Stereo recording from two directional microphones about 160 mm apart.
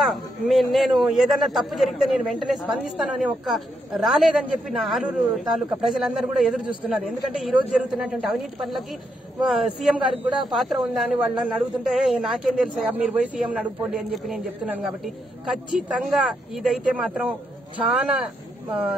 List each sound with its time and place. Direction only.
0.0 s a man's voice: centre (ahead or behind)